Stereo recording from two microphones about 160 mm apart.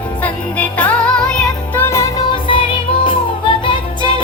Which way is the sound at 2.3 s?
30° left (ahead or behind).